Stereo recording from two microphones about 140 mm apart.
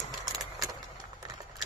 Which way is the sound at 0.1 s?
Centre (ahead or behind).